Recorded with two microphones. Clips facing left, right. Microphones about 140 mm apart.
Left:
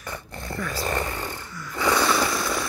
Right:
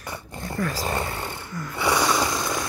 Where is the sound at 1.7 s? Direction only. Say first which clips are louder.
Even; 15° right (ahead or behind).